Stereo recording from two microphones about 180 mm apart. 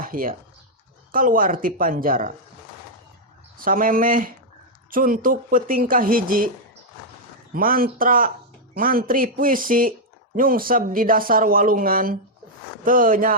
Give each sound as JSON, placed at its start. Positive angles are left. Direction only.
{"t": 0.0, "sound": "speech", "side_deg": -50}
{"t": 3.6, "sound": "speech", "side_deg": -50}
{"t": 7.5, "sound": "speech", "side_deg": -50}